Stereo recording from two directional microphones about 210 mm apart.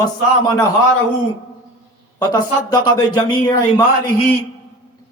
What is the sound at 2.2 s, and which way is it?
A man's voice, 20° left (ahead or behind).